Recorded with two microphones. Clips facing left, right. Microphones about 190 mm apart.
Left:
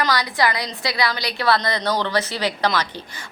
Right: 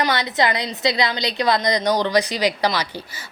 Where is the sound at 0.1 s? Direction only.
25° right (ahead or behind).